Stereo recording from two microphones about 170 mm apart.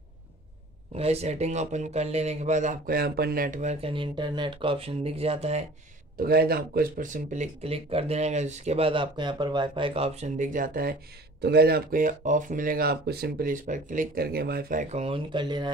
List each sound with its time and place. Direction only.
0.9 s speech: 40° right (ahead or behind)
3.8 s speech: 30° right (ahead or behind)
6.1 s speech: 65° right (ahead or behind)
7.6 s speech: 35° right (ahead or behind); by 11.0 s 55° right (ahead or behind)
11.4 s speech: 65° right (ahead or behind); by 15.7 s 25° right (ahead or behind)